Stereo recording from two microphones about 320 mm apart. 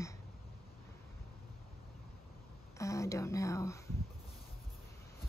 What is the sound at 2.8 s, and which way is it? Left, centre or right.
Speech, centre.